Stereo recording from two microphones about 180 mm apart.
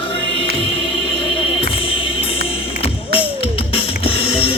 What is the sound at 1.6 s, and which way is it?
Music, 30° left (ahead or behind).